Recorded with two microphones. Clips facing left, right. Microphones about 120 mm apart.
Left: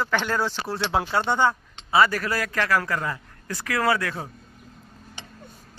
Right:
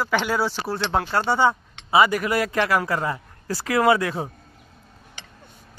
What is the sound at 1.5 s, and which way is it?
Speech, 15° right (ahead or behind).